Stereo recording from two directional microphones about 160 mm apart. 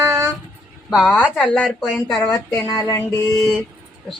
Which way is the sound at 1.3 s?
5° left (ahead or behind).